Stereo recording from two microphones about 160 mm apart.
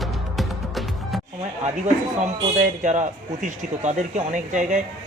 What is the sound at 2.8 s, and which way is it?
Speech, 50° right (ahead or behind).